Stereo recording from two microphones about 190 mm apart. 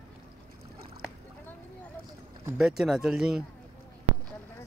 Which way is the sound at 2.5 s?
Centre (ahead or behind).